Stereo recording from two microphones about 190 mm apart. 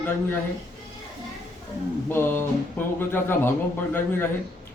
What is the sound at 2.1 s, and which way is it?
A man's voice, 10° left (ahead or behind).